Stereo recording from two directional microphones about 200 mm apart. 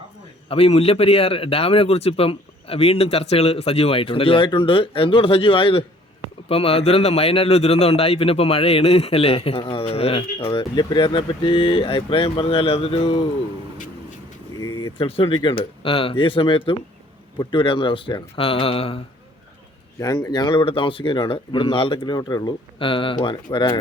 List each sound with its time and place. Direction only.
0.4 s a man's voice: 30° left (ahead or behind)
14.9 s a man's voice: 25° left (ahead or behind)
20.0 s a man's voice: 20° left (ahead or behind)